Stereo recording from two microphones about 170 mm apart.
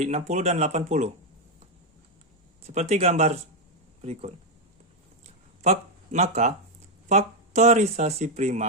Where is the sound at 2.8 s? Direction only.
40° right (ahead or behind).